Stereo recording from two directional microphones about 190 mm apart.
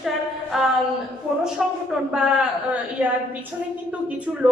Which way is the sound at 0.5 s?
Centre (ahead or behind).